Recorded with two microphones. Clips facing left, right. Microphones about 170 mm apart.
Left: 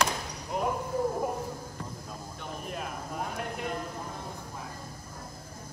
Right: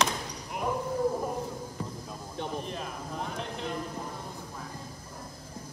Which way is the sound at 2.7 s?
5° left (ahead or behind).